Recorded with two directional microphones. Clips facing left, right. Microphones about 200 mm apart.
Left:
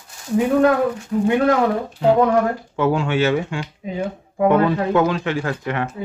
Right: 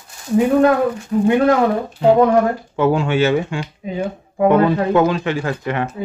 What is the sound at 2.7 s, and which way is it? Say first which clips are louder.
Speech: right 3 dB; 20° right (ahead or behind).